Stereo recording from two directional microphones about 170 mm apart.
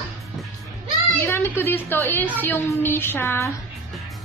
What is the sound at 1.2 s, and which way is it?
A woman's voice, 15° left (ahead or behind).